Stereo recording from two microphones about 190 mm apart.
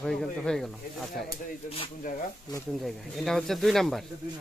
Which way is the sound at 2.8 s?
Centre (ahead or behind).